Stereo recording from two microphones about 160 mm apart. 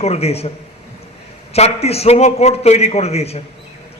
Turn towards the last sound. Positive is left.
turn(degrees=40)  # may be behind; listen again after turning